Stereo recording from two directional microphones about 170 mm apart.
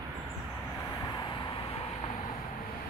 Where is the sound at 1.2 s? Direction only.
30° left (ahead or behind).